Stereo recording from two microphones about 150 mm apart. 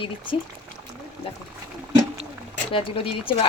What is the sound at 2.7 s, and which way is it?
Speech, 35° left (ahead or behind).